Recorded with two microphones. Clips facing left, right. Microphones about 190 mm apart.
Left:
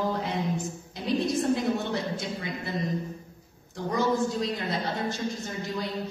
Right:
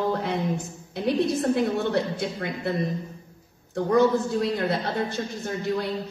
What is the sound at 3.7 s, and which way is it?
A woman's voice, 60° right (ahead or behind).